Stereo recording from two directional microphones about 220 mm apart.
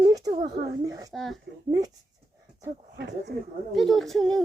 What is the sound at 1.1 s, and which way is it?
Speech, centre (ahead or behind).